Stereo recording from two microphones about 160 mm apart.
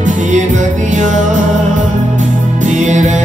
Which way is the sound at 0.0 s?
50° right (ahead or behind).